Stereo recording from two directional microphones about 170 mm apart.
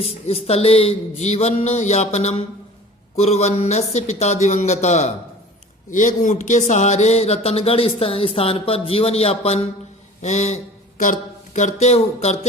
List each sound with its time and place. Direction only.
0.0 s a man's voice: 35° left (ahead or behind)